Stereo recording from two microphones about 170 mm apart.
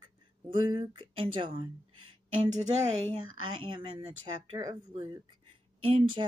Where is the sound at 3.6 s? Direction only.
30° right (ahead or behind).